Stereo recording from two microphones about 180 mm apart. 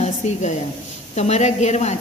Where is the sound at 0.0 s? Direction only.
40° left (ahead or behind).